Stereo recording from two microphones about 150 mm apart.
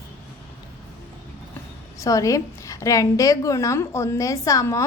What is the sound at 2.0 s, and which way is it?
A woman's voice, 20° left (ahead or behind).